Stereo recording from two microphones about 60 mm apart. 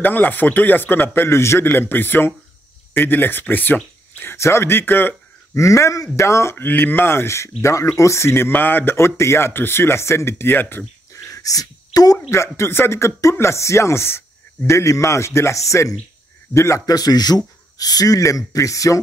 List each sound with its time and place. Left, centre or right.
0.0 s a man's voice: left
4.4 s speech: left
5.6 s speech: left
6.5 s speech: left
11.2 s a sound: left
12.5 s speech: left
14.7 s speech: left
16.8 s speech: left